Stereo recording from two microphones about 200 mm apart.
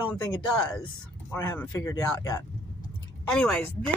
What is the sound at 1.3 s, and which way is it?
Speech, 15° left (ahead or behind).